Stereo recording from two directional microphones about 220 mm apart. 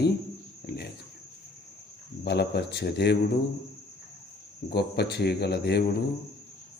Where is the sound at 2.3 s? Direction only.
50° left (ahead or behind).